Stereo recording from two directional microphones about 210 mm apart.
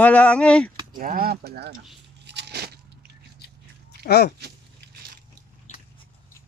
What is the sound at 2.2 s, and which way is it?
Biting, 55° right (ahead or behind).